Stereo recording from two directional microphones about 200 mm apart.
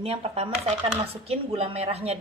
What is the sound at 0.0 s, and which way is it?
Speech, 30° right (ahead or behind).